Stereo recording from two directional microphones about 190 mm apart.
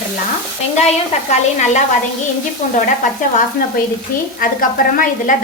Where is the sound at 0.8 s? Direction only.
35° left (ahead or behind).